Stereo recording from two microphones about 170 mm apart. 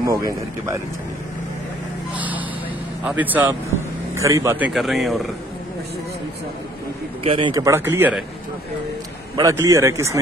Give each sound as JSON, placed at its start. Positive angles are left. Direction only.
{"t": 0.0, "sound": "speech", "side_deg": -20}
{"t": 2.1, "sound": "a sound", "side_deg": -10}
{"t": 3.0, "sound": "speech", "side_deg": -10}
{"t": 7.2, "sound": "speech", "side_deg": -30}
{"t": 9.4, "sound": "speech", "side_deg": -20}